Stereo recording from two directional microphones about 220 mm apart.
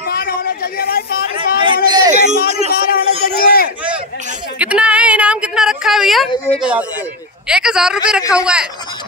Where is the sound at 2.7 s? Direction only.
45° left (ahead or behind).